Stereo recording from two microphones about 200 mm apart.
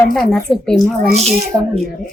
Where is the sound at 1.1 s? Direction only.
35° right (ahead or behind).